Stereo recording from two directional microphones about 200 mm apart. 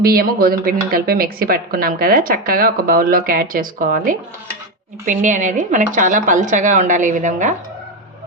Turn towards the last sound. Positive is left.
turn(degrees=-40)  # may be behind; listen again after turning